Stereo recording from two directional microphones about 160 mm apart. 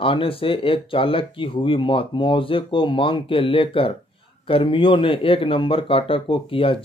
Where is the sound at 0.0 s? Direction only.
35° left (ahead or behind).